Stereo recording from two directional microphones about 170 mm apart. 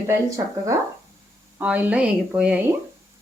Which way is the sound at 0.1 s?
20° right (ahead or behind).